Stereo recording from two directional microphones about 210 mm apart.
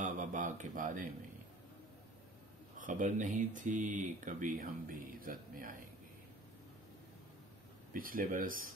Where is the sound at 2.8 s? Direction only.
35° right (ahead or behind).